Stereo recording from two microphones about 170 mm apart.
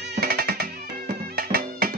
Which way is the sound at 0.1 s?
60° right (ahead or behind).